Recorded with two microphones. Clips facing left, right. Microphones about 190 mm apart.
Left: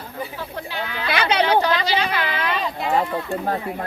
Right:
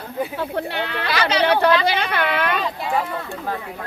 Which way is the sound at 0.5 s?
65° right (ahead or behind).